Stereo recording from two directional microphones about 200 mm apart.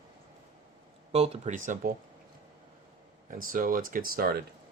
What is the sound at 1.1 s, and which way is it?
Speech, 35° right (ahead or behind).